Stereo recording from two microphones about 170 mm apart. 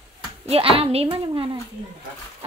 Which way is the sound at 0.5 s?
35° right (ahead or behind).